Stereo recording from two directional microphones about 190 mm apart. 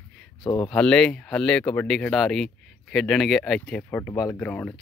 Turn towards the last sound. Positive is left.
turn(degrees=10)  # may be behind; listen again after turning